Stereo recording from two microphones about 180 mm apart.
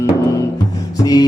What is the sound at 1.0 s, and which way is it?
Music, 20° left (ahead or behind).